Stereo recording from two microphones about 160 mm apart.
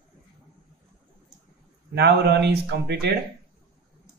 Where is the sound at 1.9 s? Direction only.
90° right.